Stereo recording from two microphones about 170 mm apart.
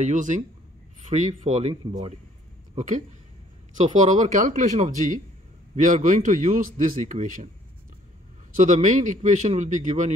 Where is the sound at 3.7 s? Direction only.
45° right (ahead or behind).